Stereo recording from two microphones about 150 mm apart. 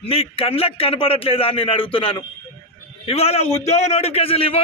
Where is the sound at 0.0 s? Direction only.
40° left (ahead or behind).